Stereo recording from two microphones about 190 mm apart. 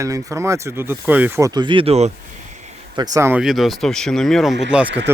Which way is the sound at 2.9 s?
20° right (ahead or behind).